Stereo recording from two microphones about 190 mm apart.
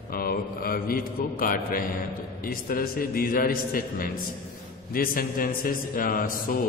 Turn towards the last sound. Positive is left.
turn(degrees=45)  # may be behind; listen again after turning